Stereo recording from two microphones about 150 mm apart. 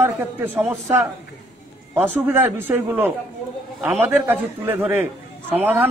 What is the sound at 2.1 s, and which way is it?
A man's voice, 15° right (ahead or behind).